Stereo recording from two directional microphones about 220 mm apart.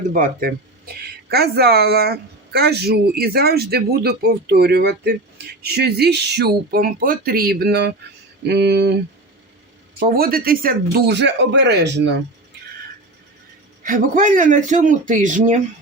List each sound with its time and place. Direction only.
0.1 s speech: 40° right (ahead or behind)
10.0 s speech: 40° right (ahead or behind)
13.8 s speech: 35° right (ahead or behind)